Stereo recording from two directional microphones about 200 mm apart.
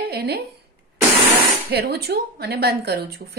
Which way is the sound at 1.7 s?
55° right (ahead or behind).